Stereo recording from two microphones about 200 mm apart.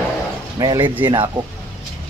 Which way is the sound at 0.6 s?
20° right (ahead or behind).